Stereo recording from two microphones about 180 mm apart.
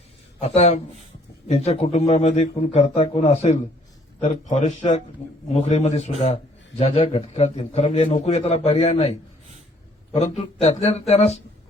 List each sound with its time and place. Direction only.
0.4 s a man's voice: 40° left (ahead or behind)
10.2 s a man's voice: 35° left (ahead or behind)